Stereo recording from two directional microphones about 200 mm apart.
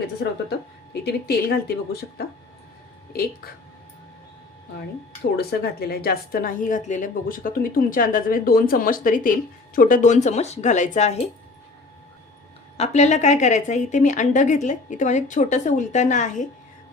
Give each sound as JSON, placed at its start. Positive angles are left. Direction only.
{"t": 1.0, "sound": "a woman's voice", "side_deg": 50}
{"t": 5.4, "sound": "a woman's voice", "side_deg": 50}
{"t": 12.7, "sound": "speech", "side_deg": 35}